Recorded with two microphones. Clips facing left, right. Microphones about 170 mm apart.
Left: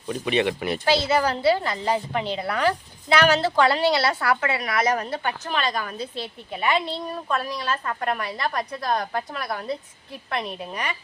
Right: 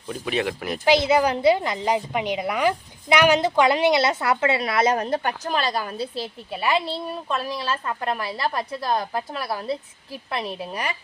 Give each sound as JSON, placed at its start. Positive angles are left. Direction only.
{"t": 0.1, "sound": "speech", "side_deg": 0}
{"t": 0.9, "sound": "a woman's voice", "side_deg": -15}
{"t": 5.5, "sound": "a woman's voice", "side_deg": -35}
{"t": 6.5, "sound": "speech", "side_deg": -5}
{"t": 6.8, "sound": "a woman's voice", "side_deg": -25}
{"t": 8.9, "sound": "speech", "side_deg": 0}